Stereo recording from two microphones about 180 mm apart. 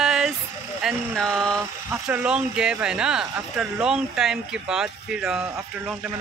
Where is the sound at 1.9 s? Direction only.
10° right (ahead or behind).